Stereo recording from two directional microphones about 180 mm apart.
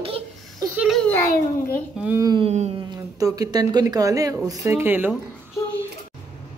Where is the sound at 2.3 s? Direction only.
30° right (ahead or behind).